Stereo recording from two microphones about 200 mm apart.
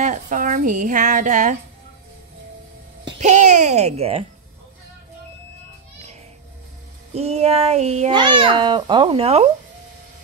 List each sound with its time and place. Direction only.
0.0 s a woman's voice: 40° right (ahead or behind)
3.2 s a child's voice: 35° right (ahead or behind)
7.2 s a child's voice: 30° right (ahead or behind)